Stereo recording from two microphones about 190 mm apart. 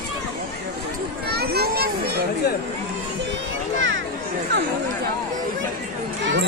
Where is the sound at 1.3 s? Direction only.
55° right (ahead or behind).